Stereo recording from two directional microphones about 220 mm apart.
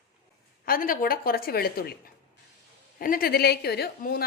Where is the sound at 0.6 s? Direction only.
40° left (ahead or behind).